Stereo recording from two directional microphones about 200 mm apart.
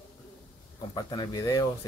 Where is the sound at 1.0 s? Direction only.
20° left (ahead or behind).